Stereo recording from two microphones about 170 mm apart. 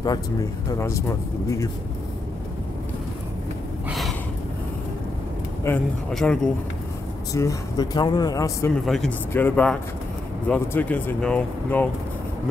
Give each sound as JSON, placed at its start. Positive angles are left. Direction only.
{"t": 0.0, "sound": "speech", "side_deg": 20}
{"t": 5.7, "sound": "speech", "side_deg": 10}
{"t": 7.3, "sound": "speech", "side_deg": 20}
{"t": 8.8, "sound": "speech", "side_deg": 0}